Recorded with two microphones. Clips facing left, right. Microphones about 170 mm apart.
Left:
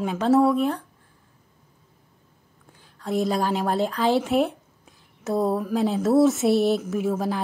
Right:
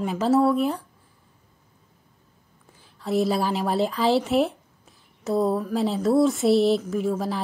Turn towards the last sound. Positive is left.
turn(degrees=0)  # may be behind; listen again after turning